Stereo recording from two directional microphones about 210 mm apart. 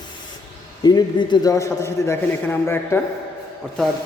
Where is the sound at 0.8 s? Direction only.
20° left (ahead or behind).